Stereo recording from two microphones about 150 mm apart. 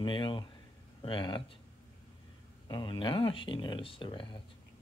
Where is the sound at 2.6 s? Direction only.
30° left (ahead or behind).